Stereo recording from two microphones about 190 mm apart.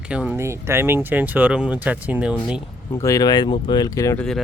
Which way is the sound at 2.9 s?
15° left (ahead or behind).